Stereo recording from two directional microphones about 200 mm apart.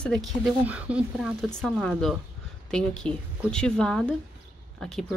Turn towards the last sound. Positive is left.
turn(degrees=0)  # may be behind; listen again after turning